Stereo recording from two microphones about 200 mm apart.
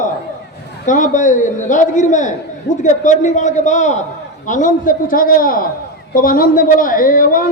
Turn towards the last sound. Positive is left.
turn(degrees=45)  # may be behind; listen again after turning